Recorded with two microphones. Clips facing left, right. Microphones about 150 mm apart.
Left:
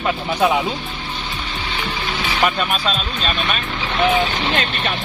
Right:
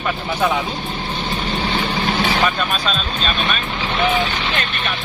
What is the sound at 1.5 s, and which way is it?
Vehicle, 45° right (ahead or behind).